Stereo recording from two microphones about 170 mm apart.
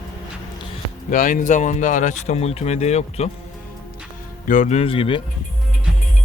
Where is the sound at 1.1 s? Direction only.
55° left (ahead or behind).